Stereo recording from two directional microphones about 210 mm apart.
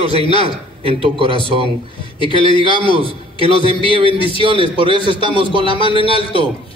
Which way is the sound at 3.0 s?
25° right (ahead or behind).